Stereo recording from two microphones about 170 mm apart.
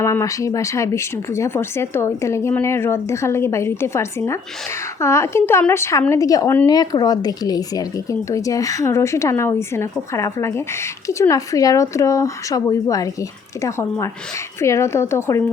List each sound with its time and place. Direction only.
0.0 s a woman's voice: 15° left (ahead or behind)